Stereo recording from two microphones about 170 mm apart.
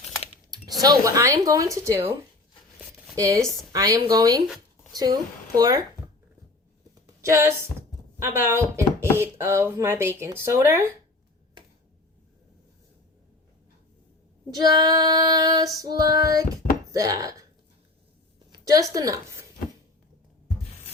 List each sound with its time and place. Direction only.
0.8 s a woman's voice: 20° right (ahead or behind)
3.2 s female singing: 20° right (ahead or behind)
4.4 s a sound: centre (ahead or behind)
4.9 s female singing: 20° right (ahead or behind)
7.2 s speech: 15° right (ahead or behind)
14.5 s female singing: 20° right (ahead or behind)
18.5 s a woman's voice: 20° right (ahead or behind)